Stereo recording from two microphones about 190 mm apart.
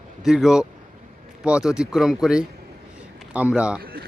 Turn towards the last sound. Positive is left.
turn(degrees=-50)  # may be behind; listen again after turning